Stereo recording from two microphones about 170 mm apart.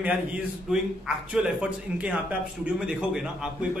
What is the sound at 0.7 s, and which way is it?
A man's voice, 5° right (ahead or behind).